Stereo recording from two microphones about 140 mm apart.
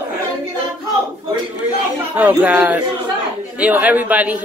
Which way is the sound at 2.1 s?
10° right (ahead or behind).